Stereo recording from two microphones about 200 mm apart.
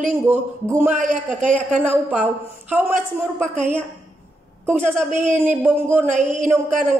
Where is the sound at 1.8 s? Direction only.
5° right (ahead or behind).